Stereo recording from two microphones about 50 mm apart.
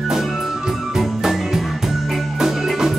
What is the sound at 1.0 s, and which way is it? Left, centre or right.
Music, centre.